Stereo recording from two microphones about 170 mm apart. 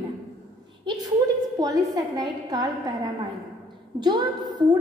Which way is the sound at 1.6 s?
25° right (ahead or behind).